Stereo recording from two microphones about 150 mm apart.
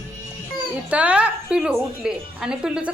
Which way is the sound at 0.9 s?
10° right (ahead or behind).